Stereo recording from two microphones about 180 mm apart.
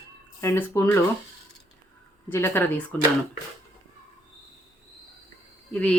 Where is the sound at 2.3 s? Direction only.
10° left (ahead or behind).